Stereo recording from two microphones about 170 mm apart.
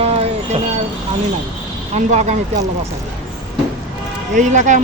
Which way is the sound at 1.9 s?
40° right (ahead or behind).